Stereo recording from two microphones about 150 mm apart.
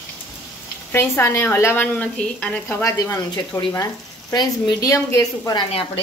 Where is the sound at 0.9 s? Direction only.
15° left (ahead or behind).